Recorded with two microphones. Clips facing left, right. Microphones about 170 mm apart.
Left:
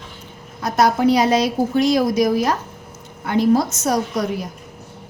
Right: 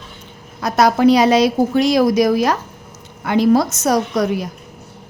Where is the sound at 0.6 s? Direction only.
85° right.